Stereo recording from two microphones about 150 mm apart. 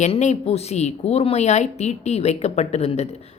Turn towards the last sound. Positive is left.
turn(degrees=45)  # may be behind; listen again after turning